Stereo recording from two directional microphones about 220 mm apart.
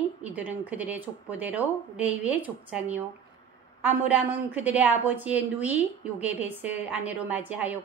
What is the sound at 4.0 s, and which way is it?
Speech, 5° right (ahead or behind).